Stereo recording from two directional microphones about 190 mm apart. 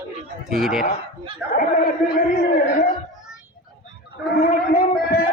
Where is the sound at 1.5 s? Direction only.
50° left (ahead or behind).